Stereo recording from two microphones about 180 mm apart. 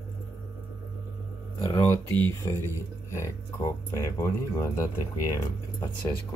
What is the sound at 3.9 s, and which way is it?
Speech, 15° left (ahead or behind).